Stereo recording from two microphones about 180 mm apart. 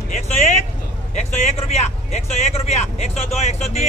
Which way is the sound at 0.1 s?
40° left (ahead or behind).